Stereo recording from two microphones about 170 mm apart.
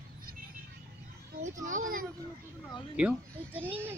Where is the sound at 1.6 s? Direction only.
50° right (ahead or behind).